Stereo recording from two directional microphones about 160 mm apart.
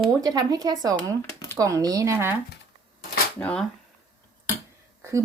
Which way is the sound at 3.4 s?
10° left (ahead or behind).